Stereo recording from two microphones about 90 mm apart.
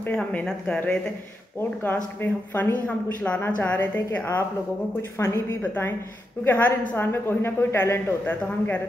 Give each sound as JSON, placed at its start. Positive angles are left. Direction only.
{"t": 0.0, "sound": "a woman's voice", "side_deg": 15}